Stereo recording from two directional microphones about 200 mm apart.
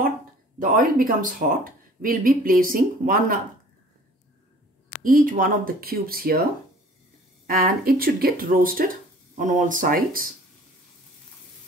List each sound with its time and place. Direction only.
0.6 s speech: 40° right (ahead or behind)
5.0 s speech: 45° right (ahead or behind)
7.4 s speech: 45° right (ahead or behind)